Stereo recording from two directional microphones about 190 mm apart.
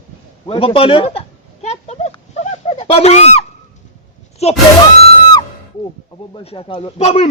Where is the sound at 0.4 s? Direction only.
30° left (ahead or behind).